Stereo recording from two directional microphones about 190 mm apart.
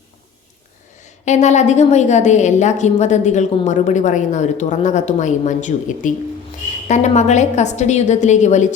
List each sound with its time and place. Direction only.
1.2 s a woman's voice: 40° left (ahead or behind)